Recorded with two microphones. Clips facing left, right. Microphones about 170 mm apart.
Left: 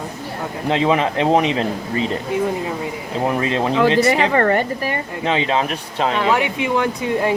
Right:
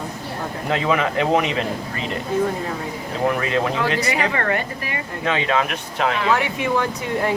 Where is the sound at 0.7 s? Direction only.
30° left (ahead or behind).